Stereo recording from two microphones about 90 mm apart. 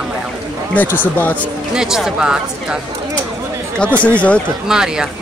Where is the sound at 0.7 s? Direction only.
20° left (ahead or behind).